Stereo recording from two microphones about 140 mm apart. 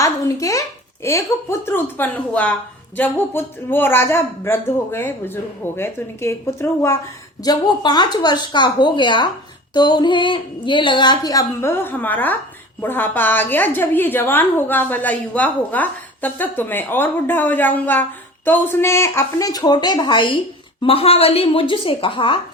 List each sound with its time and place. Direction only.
0.0 s a sound: 25° left (ahead or behind)
1.0 s speech: 20° left (ahead or behind)
7.4 s a woman's voice: 30° left (ahead or behind)